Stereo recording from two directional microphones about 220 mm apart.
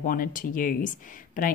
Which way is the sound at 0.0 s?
40° left (ahead or behind).